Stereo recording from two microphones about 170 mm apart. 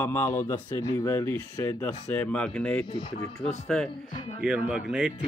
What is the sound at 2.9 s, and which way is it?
Speech, 30° left (ahead or behind).